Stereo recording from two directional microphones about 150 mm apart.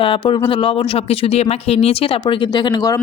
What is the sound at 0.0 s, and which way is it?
Speech, 35° left (ahead or behind).